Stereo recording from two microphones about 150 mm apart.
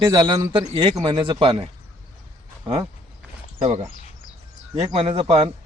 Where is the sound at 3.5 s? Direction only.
45° right (ahead or behind).